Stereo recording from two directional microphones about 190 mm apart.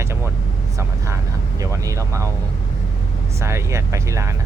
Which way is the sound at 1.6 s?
15° right (ahead or behind).